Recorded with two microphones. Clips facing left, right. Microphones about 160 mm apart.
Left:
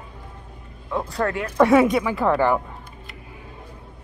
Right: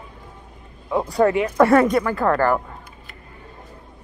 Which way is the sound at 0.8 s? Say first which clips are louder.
Right 6 dB; 20° right (ahead or behind).